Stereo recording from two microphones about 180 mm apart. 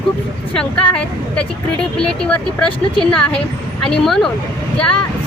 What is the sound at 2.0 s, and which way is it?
Speech, 5° left (ahead or behind).